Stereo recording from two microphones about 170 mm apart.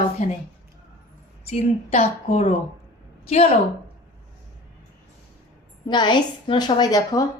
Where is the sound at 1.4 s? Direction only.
40° left (ahead or behind).